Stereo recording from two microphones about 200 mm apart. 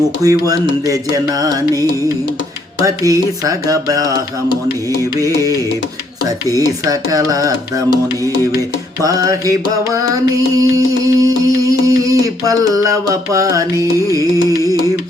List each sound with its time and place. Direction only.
0.2 s music: 15° right (ahead or behind)
2.8 s music: 15° right (ahead or behind)
5.2 s music: 15° right (ahead or behind)
8.5 s music: 15° right (ahead or behind)